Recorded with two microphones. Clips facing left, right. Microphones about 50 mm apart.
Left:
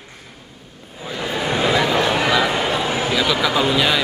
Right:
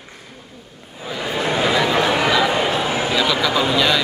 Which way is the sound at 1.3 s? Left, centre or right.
Centre.